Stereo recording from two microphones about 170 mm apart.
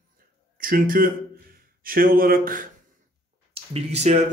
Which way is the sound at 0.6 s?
55° right (ahead or behind).